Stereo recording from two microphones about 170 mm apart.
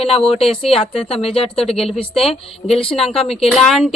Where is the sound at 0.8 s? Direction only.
35° left (ahead or behind).